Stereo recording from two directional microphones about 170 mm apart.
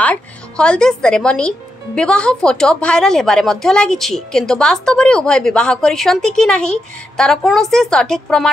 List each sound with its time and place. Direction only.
0.0 s a woman's voice: 5° left (ahead or behind)